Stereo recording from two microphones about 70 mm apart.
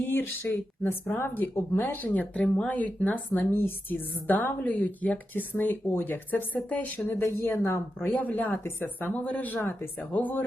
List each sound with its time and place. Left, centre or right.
0.1 s speech: left
2.3 s speech: centre
2.6 s a woman's voice: left